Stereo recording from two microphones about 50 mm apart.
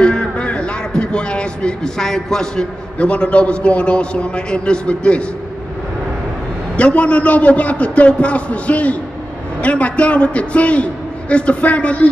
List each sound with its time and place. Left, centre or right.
0.0 s a sound: left
3.0 s a man's voice: left
6.8 s a man's voice: left